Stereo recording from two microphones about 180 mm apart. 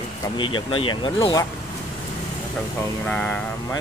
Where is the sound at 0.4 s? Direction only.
25° left (ahead or behind).